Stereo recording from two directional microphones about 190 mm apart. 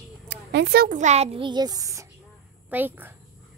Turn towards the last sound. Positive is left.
turn(degrees=-10)  # may be behind; listen again after turning